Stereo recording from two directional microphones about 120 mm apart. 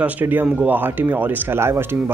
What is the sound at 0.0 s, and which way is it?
A man's voice, 15° right (ahead or behind).